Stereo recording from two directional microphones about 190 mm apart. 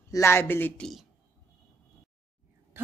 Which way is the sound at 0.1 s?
15° left (ahead or behind).